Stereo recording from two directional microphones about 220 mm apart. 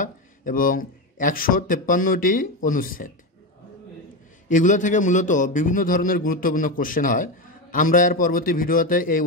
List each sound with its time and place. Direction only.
0.0 s speech: 40° left (ahead or behind)
4.5 s a man's voice: 35° left (ahead or behind)